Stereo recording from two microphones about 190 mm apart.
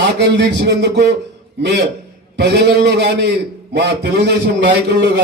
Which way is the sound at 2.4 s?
60° right (ahead or behind).